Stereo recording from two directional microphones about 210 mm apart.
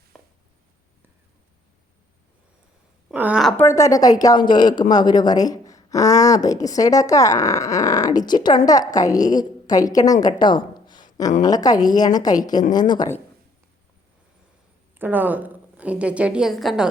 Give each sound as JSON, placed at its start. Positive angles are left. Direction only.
{"t": 3.1, "sound": "a woman's voice", "side_deg": -5}
{"t": 3.6, "sound": "speech", "side_deg": 15}
{"t": 14.9, "sound": "a woman's voice", "side_deg": -10}